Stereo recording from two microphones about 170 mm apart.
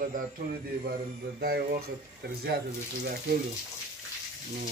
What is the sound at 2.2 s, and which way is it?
Speech, 85° right.